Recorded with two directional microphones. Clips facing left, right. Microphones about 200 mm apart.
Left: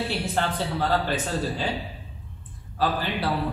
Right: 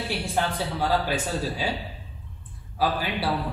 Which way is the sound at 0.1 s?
10° right (ahead or behind).